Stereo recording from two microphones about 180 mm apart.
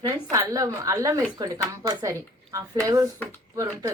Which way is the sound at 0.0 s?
20° right (ahead or behind).